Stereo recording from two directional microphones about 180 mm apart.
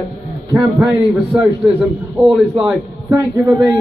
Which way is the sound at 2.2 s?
Centre (ahead or behind).